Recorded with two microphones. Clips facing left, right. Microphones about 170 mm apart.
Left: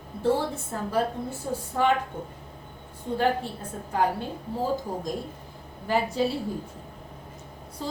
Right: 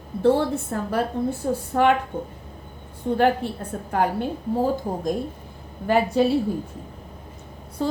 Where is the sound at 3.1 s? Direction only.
65° right (ahead or behind).